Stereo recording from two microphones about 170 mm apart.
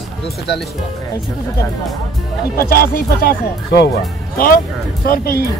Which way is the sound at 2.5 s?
60° left (ahead or behind).